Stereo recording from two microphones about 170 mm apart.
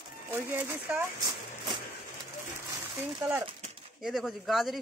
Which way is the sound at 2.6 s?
15° right (ahead or behind).